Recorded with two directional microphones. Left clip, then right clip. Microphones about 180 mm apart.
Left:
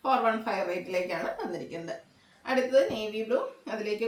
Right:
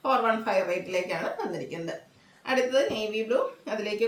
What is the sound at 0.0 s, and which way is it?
A woman's voice, 15° right (ahead or behind).